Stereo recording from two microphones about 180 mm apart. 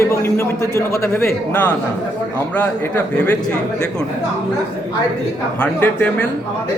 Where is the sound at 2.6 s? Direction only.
10° left (ahead or behind).